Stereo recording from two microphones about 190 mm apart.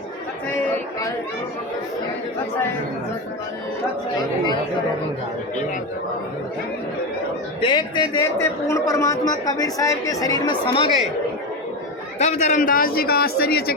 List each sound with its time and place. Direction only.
7.6 s a man's voice: 25° left (ahead or behind)
12.2 s a man's voice: 40° left (ahead or behind); by 13.7 s 55° left (ahead or behind)